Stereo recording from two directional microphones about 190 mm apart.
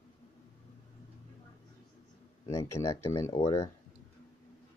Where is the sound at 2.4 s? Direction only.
15° left (ahead or behind).